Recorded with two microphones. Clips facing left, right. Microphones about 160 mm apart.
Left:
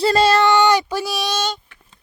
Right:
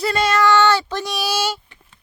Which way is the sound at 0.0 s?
30° left (ahead or behind).